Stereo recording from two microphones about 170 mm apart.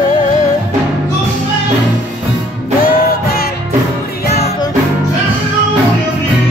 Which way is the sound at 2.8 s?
60° left (ahead or behind).